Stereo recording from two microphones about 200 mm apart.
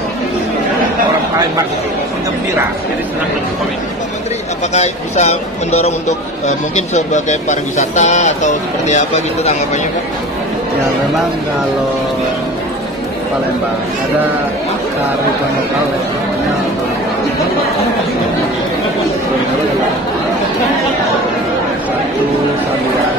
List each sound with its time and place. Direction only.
4.7 s speech: 35° left (ahead or behind)